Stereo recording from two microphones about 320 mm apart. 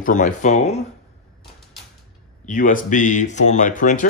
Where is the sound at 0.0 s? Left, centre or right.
Left.